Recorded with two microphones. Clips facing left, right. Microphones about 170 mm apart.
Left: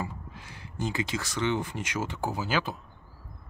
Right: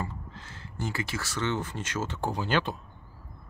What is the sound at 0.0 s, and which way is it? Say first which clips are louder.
Speech: even; 15° left (ahead or behind).